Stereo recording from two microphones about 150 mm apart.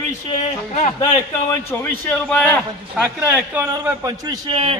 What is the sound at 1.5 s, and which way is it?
A man's voice, 15° left (ahead or behind).